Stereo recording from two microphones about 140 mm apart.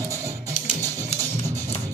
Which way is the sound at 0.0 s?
20° right (ahead or behind).